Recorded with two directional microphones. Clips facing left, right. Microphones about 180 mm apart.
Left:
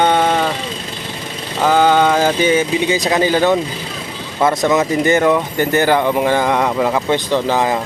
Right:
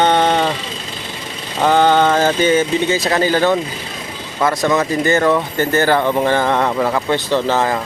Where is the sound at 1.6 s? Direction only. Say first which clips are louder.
Even; 5° left (ahead or behind).